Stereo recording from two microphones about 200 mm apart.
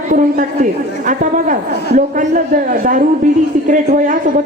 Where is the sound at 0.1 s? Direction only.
40° right (ahead or behind).